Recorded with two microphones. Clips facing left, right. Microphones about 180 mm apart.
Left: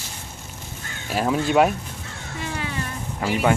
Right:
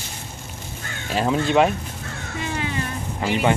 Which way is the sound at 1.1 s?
10° left (ahead or behind).